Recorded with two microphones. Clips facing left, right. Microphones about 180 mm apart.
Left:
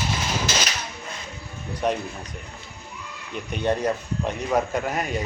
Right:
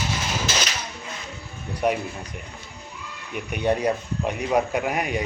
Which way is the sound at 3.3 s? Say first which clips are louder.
Right 1 dB; 10° right (ahead or behind).